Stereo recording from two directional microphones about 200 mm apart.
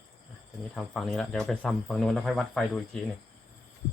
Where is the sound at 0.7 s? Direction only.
Centre (ahead or behind).